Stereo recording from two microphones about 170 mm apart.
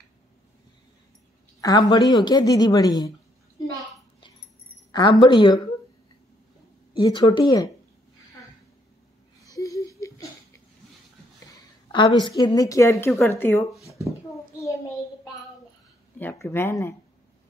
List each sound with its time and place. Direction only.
1.6 s a woman's voice: 25° left (ahead or behind)
4.9 s a woman's voice: 25° left (ahead or behind)
7.0 s a woman's voice: 25° left (ahead or behind)
9.5 s a sound: 20° left (ahead or behind)
11.9 s a woman's voice: 25° left (ahead or behind)
16.2 s speech: 10° left (ahead or behind)